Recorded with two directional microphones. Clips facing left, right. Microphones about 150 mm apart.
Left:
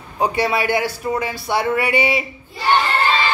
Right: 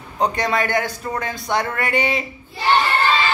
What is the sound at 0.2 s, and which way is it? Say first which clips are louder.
A man's voice: left 1 dB; 10° left (ahead or behind).